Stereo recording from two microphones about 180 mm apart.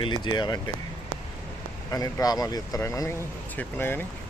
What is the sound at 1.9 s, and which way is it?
Speech, 20° left (ahead or behind).